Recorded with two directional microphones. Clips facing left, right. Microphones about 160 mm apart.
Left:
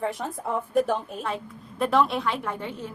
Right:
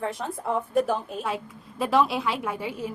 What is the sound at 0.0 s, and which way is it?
A woman's voice, centre (ahead or behind).